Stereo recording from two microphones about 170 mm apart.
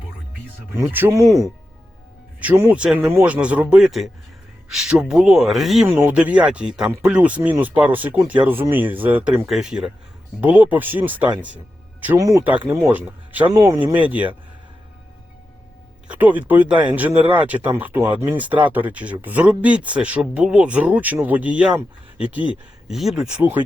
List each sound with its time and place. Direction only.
0.7 s speech: 15° right (ahead or behind)
13.5 s speech: 20° right (ahead or behind)
14.1 s speech: 10° right (ahead or behind)
16.0 s speech: 10° right (ahead or behind)
22.9 s speech: centre (ahead or behind)